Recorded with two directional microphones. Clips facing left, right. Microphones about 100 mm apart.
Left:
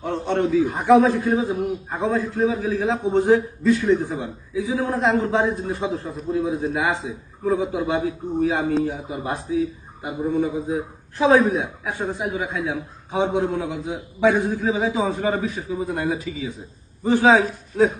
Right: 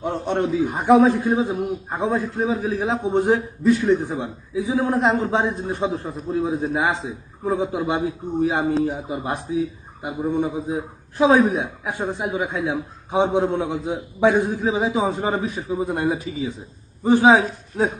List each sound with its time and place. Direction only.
0.0 s a man's voice: 15° right (ahead or behind)